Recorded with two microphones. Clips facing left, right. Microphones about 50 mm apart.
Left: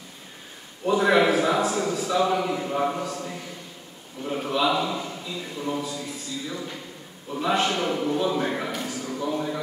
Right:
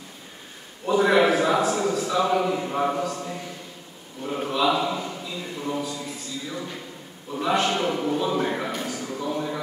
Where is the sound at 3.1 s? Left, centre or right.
Centre.